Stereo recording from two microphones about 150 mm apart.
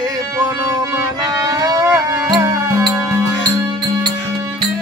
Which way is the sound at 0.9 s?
25° right (ahead or behind).